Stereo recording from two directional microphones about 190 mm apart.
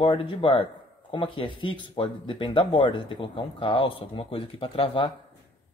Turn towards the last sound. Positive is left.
turn(degrees=25)  # may be behind; listen again after turning